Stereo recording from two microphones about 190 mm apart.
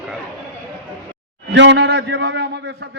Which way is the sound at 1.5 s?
65° right (ahead or behind).